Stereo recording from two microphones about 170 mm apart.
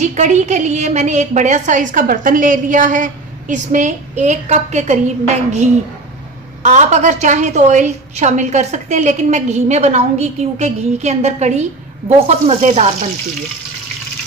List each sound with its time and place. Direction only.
0.0 s a woman's voice: 45° right (ahead or behind)